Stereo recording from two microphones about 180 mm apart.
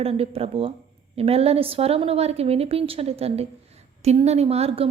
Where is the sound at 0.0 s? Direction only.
35° right (ahead or behind).